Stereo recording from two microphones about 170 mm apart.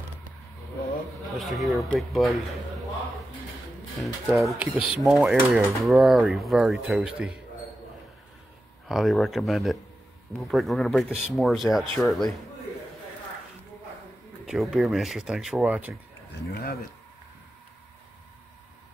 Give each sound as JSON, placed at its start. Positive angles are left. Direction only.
{"t": 1.3, "sound": "speech", "side_deg": 0}
{"t": 4.0, "sound": "speech", "side_deg": 0}
{"t": 8.8, "sound": "speech", "side_deg": 0}
{"t": 14.4, "sound": "speech", "side_deg": 0}
{"t": 16.4, "sound": "speech", "side_deg": 65}